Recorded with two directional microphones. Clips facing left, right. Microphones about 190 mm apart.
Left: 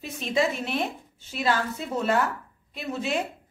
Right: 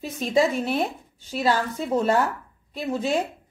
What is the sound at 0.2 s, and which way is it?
Speech, 40° right (ahead or behind).